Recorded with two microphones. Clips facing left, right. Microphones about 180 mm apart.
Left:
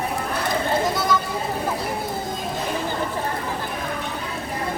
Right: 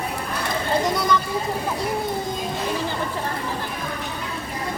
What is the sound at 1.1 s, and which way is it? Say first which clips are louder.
Vehicle: right 1 dB; 5° left (ahead or behind).